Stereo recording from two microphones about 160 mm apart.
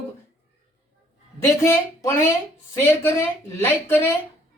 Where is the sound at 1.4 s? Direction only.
15° left (ahead or behind).